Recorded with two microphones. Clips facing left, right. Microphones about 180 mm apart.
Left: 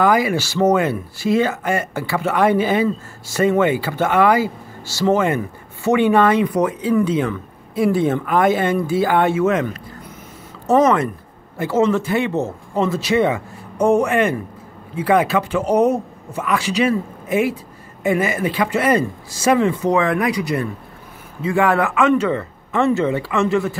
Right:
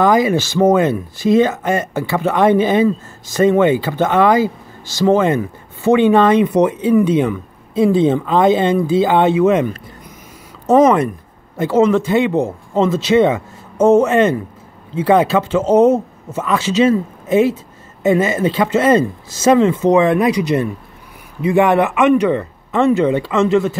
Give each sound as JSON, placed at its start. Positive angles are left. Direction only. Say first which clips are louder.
{"t": 0.0, "sound": "speech", "louder": "right 3 dB", "side_deg": -20}